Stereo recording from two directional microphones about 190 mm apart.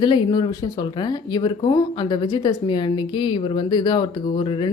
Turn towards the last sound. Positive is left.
turn(degrees=25)  # may be behind; listen again after turning